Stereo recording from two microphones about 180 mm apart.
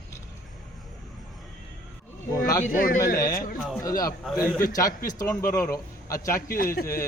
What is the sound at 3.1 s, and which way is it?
Speech, 20° left (ahead or behind).